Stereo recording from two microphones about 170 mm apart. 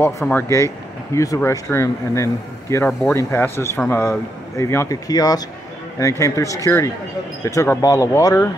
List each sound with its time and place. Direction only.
0.0 s a man's voice: 10° left (ahead or behind)